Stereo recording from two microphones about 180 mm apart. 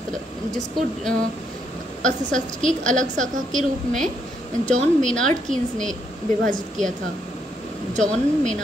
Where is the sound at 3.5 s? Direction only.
Centre (ahead or behind).